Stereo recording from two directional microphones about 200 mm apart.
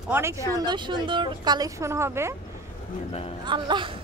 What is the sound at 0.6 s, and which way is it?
Speech, 25° right (ahead or behind).